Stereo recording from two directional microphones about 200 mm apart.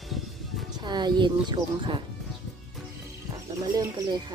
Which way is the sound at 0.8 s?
20° right (ahead or behind).